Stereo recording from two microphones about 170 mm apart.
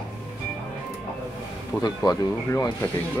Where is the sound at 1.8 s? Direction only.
20° left (ahead or behind).